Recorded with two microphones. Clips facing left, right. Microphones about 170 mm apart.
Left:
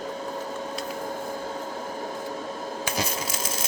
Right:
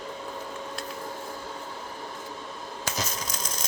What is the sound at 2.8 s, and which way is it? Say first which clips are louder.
Coin: left 3 dB; 10° left (ahead or behind).